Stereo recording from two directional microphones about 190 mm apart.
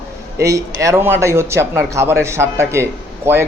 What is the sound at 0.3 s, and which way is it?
A man's voice, 15° right (ahead or behind).